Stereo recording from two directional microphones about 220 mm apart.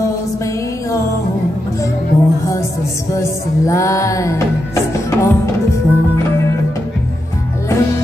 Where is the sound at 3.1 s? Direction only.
15° left (ahead or behind).